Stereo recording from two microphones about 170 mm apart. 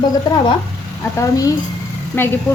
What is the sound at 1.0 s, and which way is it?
Speech, 20° left (ahead or behind).